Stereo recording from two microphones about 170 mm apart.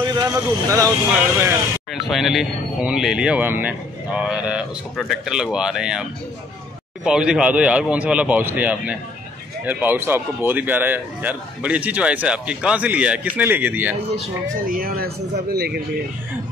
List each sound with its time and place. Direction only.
0.0 s speech: 25° right (ahead or behind)
2.0 s speech: centre (ahead or behind)
7.1 s speech: 5° right (ahead or behind)
14.7 s a man's voice: 60° right (ahead or behind)